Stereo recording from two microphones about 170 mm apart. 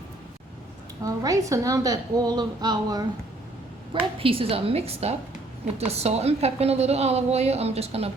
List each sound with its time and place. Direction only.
1.0 s a woman's voice: 20° right (ahead or behind)
4.2 s a woman's voice: 35° right (ahead or behind)